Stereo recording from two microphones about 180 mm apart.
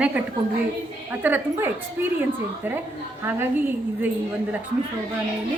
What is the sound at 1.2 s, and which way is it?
A woman's voice, 10° right (ahead or behind).